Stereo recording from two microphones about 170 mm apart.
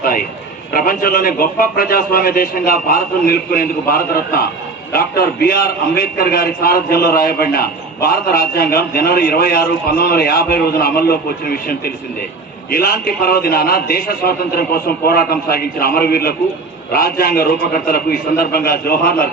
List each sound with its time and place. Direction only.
0.0 s a man's voice: 55° left (ahead or behind)
12.7 s a man's voice: 60° left (ahead or behind)